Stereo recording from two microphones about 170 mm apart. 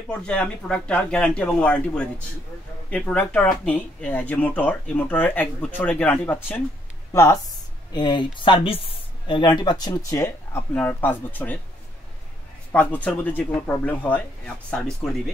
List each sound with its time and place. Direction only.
0.3 s speech: 5° left (ahead or behind)
12.7 s speech: 10° left (ahead or behind)